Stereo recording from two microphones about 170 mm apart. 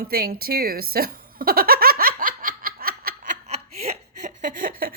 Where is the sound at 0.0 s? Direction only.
60° right (ahead or behind).